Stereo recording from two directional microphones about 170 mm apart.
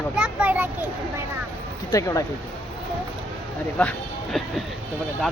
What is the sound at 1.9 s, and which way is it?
Speech, 20° left (ahead or behind).